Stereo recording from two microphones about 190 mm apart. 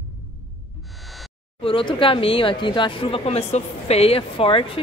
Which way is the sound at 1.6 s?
25° left (ahead or behind).